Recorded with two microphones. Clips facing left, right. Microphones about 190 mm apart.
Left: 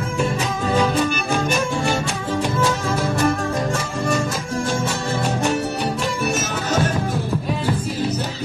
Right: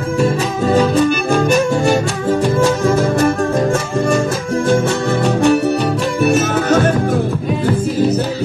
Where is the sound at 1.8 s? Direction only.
45° right (ahead or behind).